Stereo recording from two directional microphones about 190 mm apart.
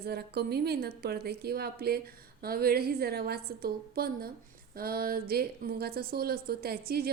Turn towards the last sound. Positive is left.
turn(degrees=-55)  # may be behind; listen again after turning